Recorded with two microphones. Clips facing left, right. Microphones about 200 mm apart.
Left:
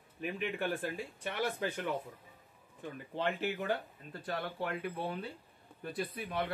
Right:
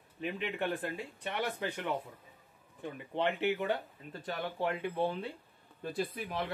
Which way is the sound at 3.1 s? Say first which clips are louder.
Right 4 dB; 65° right (ahead or behind).